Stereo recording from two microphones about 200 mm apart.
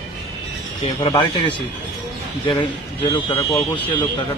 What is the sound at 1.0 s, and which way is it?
Speech, 25° left (ahead or behind).